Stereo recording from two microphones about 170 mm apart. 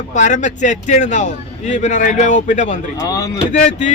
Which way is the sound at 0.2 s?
45° left (ahead or behind).